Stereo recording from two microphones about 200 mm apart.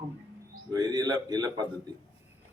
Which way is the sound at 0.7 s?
20° right (ahead or behind).